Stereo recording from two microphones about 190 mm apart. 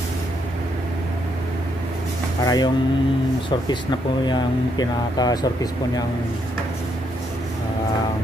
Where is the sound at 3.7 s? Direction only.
25° left (ahead or behind).